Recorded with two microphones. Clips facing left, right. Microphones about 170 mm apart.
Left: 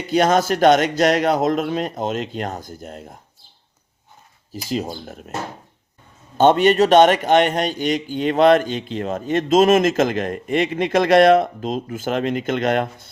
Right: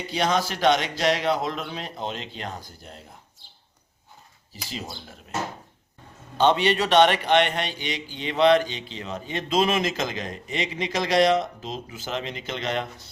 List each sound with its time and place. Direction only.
0.1 s a man's voice: 50° left (ahead or behind)
4.5 s a man's voice: 45° left (ahead or behind)
6.3 s a man's voice: 50° left (ahead or behind)